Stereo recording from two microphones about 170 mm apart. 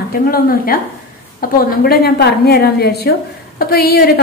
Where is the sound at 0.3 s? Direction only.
60° left (ahead or behind).